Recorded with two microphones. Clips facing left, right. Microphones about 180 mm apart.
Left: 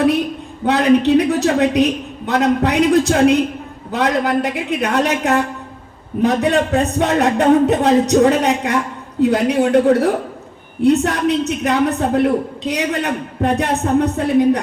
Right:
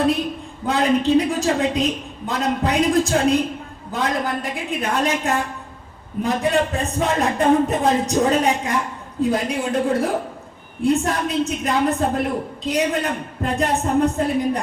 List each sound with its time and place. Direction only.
0.6 s a man's voice: 70° left (ahead or behind)